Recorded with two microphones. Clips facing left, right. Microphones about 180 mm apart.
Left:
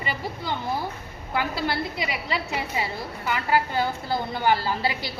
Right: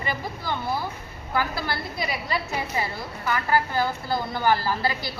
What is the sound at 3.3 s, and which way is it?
A woman's voice, 20° left (ahead or behind).